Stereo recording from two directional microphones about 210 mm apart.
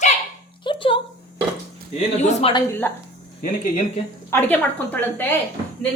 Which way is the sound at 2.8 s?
10° left (ahead or behind).